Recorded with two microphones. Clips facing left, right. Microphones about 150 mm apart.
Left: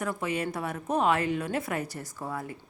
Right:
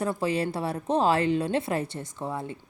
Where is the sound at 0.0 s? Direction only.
30° right (ahead or behind).